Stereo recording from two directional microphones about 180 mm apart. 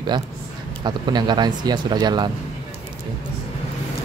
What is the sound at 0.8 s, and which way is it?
Speech, 25° right (ahead or behind).